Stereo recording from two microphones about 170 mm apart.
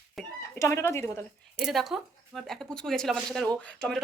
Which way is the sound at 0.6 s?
15° left (ahead or behind).